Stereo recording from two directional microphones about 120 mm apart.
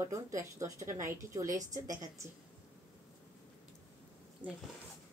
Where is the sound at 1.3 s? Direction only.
30° right (ahead or behind).